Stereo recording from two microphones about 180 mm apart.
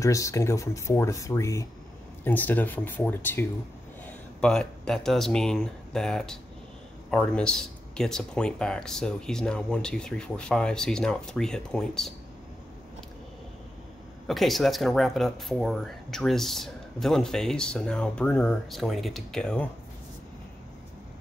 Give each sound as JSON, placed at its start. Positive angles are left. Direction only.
{"t": 0.0, "sound": "speech", "side_deg": 15}
{"t": 14.2, "sound": "speech", "side_deg": 0}